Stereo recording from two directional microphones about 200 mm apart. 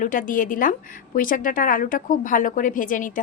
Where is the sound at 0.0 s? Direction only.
40° left (ahead or behind).